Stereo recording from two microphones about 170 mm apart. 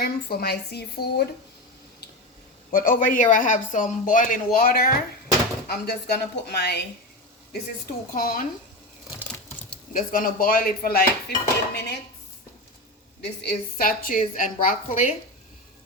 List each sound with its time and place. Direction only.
0.0 s speech: 65° left (ahead or behind)
2.7 s speech: 55° left (ahead or behind); by 6.7 s 75° left (ahead or behind)
8.1 s dishes: 55° left (ahead or behind)
9.9 s dishes: 55° left (ahead or behind)
13.2 s speech: 70° left (ahead or behind); by 15.1 s 50° left (ahead or behind)